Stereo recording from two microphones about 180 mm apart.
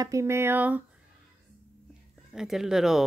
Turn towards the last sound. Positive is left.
turn(degrees=0)  # may be behind; listen again after turning